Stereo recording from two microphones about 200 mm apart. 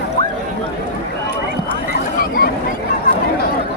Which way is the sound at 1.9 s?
50° left (ahead or behind).